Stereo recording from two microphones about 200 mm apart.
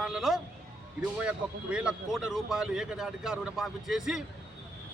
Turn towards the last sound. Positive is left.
turn(degrees=0)  # may be behind; listen again after turning